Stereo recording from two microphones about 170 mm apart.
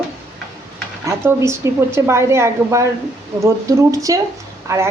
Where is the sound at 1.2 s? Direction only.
15° right (ahead or behind).